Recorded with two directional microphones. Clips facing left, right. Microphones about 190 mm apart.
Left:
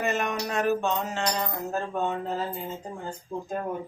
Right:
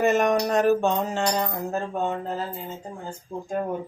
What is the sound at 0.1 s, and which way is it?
Speech, 40° right (ahead or behind).